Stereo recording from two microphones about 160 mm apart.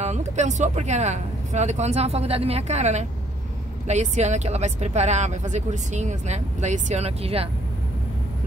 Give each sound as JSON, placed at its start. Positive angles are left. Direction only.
{"t": 0.0, "sound": "speech", "side_deg": -45}